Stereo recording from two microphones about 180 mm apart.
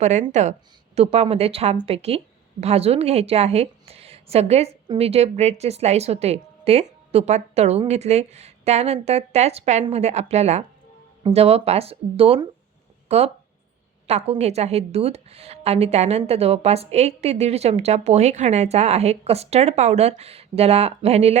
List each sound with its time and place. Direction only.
0.0 s a woman's voice: 40° right (ahead or behind)